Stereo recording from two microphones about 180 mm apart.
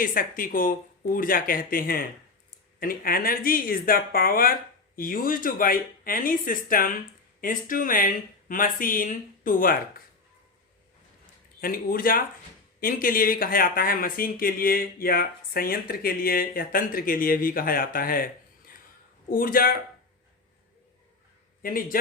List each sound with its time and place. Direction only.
0.0 s speech: 50° left (ahead or behind)
11.6 s speech: 55° left (ahead or behind)
19.3 s speech: 50° left (ahead or behind)
21.6 s speech: 50° left (ahead or behind)